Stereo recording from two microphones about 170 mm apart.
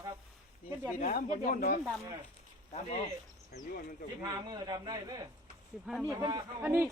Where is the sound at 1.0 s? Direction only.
55° left (ahead or behind).